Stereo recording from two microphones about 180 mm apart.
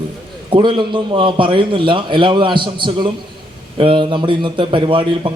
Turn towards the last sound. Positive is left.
turn(degrees=-30)  # may be behind; listen again after turning